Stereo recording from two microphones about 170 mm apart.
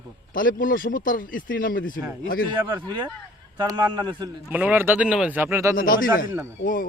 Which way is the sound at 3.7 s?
25° right (ahead or behind).